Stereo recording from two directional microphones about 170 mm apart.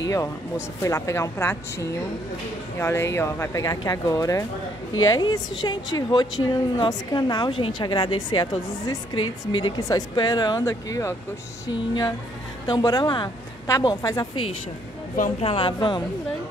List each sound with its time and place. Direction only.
0.0 s a woman's voice: 20° left (ahead or behind)
15.4 s a woman's voice: 30° left (ahead or behind)